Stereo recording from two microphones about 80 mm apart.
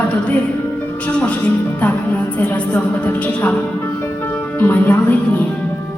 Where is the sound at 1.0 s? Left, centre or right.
Centre.